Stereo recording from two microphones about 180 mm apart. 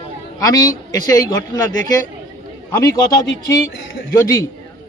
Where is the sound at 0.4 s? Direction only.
20° left (ahead or behind).